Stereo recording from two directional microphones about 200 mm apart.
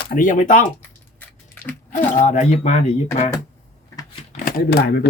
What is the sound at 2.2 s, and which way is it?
Speech, 35° left (ahead or behind).